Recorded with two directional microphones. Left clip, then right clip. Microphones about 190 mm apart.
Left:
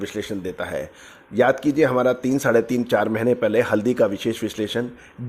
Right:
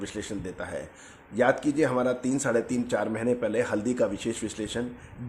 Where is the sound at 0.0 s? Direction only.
30° left (ahead or behind).